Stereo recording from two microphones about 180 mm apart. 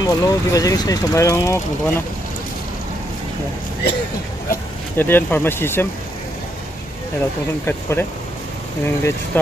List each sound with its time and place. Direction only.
0.0 s speech: 20° left (ahead or behind)
4.9 s speech: 10° left (ahead or behind)
7.6 s speech: 10° left (ahead or behind)